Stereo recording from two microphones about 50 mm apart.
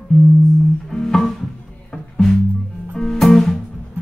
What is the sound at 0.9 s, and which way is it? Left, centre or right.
Music, centre.